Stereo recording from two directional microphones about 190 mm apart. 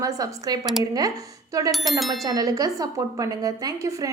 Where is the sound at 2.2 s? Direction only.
20° right (ahead or behind).